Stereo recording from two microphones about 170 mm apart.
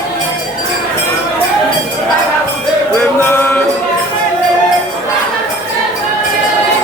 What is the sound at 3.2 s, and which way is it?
Music, 15° left (ahead or behind).